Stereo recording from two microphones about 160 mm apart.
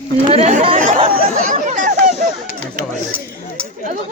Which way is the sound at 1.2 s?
55° right (ahead or behind).